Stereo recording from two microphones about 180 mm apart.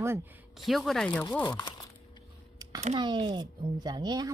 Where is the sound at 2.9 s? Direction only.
25° right (ahead or behind).